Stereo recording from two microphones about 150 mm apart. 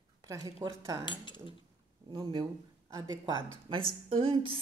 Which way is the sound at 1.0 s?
30° left (ahead or behind).